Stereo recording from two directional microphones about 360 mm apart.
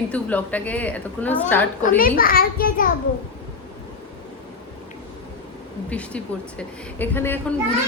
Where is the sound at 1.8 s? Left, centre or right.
Left.